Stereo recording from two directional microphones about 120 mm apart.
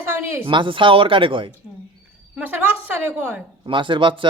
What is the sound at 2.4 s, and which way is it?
A woman's voice, 15° right (ahead or behind).